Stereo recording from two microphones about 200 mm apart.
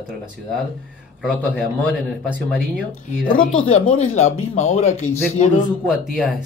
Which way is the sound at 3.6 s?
30° left (ahead or behind).